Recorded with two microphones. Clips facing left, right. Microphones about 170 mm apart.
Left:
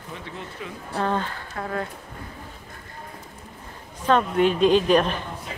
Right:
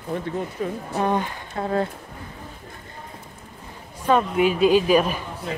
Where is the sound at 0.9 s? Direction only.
15° right (ahead or behind).